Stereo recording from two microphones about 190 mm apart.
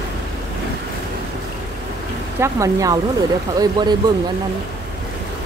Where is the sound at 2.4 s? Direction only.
15° right (ahead or behind).